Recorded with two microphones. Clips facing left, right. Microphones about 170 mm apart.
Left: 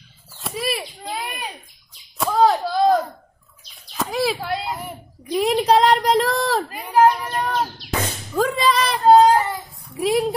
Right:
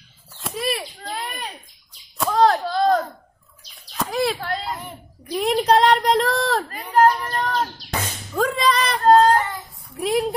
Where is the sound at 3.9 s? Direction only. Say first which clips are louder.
Even; centre (ahead or behind).